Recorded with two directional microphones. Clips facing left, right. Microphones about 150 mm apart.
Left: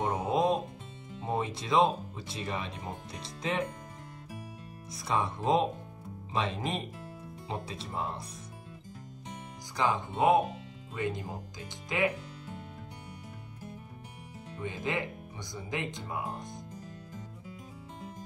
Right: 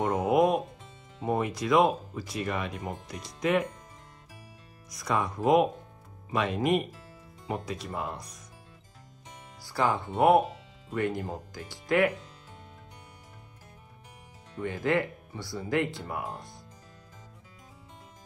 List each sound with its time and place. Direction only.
0.0 s music: 25° left (ahead or behind)
1.3 s speech: 25° left (ahead or behind)
4.9 s speech: 30° left (ahead or behind)
9.8 s speech: 20° left (ahead or behind)
14.6 s speech: 20° left (ahead or behind)